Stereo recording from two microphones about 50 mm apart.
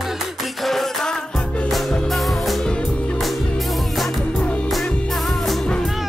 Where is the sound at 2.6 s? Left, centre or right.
Centre.